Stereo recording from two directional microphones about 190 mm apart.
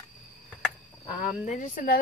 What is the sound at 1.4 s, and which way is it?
Speech, 45° left (ahead or behind).